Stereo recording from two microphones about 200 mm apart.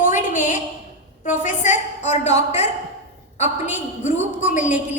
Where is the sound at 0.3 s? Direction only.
40° left (ahead or behind).